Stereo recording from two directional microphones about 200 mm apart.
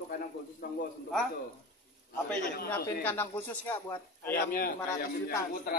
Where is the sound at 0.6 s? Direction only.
45° left (ahead or behind).